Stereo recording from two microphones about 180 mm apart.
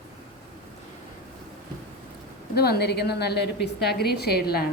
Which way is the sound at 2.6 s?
60° left (ahead or behind).